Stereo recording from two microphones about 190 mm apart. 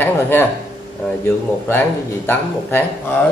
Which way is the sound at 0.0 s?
10° left (ahead or behind).